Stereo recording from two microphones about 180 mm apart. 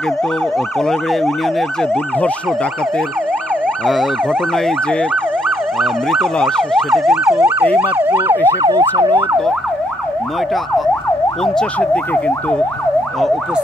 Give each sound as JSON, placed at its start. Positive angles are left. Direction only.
{"t": 0.7, "sound": "emergency vehicle", "side_deg": 0}
{"t": 3.6, "sound": "emergency vehicle", "side_deg": 0}
{"t": 8.5, "sound": "emergency vehicle", "side_deg": -20}
{"t": 11.4, "sound": "emergency vehicle", "side_deg": 5}